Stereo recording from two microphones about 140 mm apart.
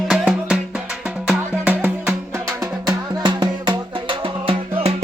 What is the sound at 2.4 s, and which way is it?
Music, 30° right (ahead or behind).